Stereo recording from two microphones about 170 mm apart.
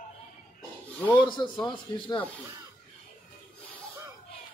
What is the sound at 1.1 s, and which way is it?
Speech, 30° left (ahead or behind).